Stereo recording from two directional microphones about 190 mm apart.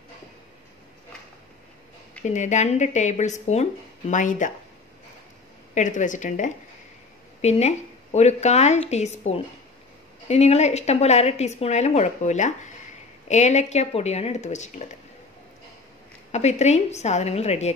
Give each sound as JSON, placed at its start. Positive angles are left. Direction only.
{"t": 2.2, "sound": "a woman's voice", "side_deg": 40}
{"t": 5.8, "sound": "a woman's voice", "side_deg": 40}
{"t": 16.3, "sound": "a woman's voice", "side_deg": 35}